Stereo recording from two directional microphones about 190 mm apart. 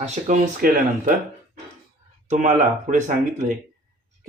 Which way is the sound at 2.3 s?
40° right (ahead or behind).